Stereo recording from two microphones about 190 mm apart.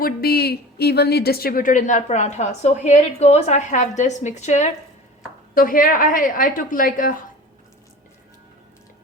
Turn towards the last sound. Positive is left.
turn(degrees=45)  # may be behind; listen again after turning